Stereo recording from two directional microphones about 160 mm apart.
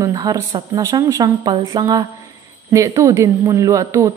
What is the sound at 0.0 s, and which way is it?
A woman's voice, 25° right (ahead or behind).